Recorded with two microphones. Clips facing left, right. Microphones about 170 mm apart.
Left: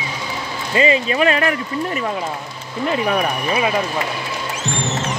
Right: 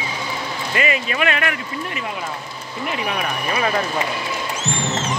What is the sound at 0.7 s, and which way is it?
Speech, 30° left (ahead or behind).